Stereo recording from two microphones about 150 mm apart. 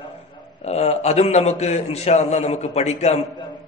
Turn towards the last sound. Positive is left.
turn(degrees=45)  # may be behind; listen again after turning